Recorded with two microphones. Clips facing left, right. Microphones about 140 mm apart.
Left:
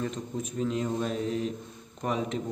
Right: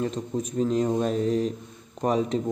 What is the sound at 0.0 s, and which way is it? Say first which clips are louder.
A man's voice: right 5 dB; 35° right (ahead or behind).